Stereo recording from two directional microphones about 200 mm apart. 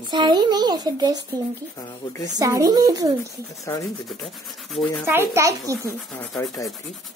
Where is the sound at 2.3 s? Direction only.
15° right (ahead or behind).